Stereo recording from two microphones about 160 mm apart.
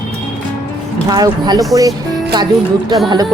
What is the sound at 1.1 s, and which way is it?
Speech, 25° right (ahead or behind).